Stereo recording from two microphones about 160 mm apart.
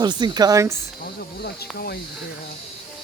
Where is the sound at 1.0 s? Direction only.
75° left (ahead or behind).